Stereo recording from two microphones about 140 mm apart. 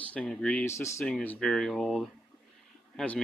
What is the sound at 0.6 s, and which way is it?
Speech, 20° left (ahead or behind).